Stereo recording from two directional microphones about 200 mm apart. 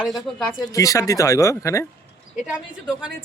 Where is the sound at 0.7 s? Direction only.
15° left (ahead or behind).